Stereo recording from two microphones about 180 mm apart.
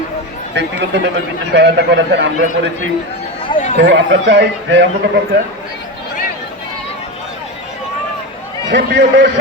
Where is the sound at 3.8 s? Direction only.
75° right (ahead or behind).